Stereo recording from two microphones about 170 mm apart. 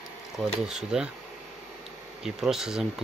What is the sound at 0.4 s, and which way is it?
Speech, 5° right (ahead or behind).